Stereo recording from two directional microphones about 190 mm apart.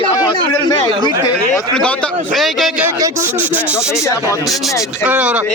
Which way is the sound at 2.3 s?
Centre (ahead or behind).